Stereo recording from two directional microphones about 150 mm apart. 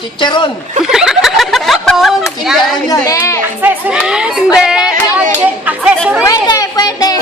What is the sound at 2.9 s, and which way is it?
Speech, 20° left (ahead or behind).